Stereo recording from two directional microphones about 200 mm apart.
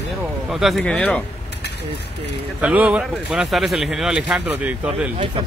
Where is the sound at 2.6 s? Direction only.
5° right (ahead or behind).